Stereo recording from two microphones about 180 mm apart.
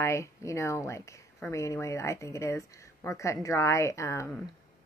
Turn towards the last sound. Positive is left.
turn(degrees=15)  # may be behind; listen again after turning